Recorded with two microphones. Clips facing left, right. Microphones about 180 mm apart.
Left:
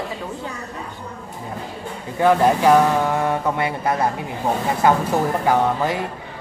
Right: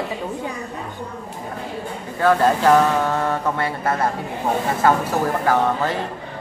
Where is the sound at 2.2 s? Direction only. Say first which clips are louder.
Left 1 dB; 15° left (ahead or behind).